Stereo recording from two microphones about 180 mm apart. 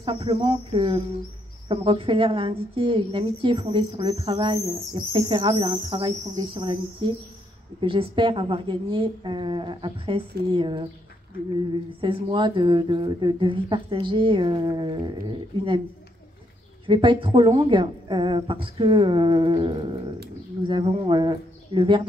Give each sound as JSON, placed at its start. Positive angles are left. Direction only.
{"t": 0.0, "sound": "a woman's voice", "side_deg": -30}
{"t": 12.0, "sound": "a woman's voice", "side_deg": -25}
{"t": 16.8, "sound": "a woman's voice", "side_deg": -25}